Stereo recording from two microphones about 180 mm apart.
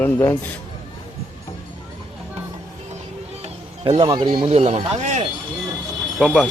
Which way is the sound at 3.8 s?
25° right (ahead or behind).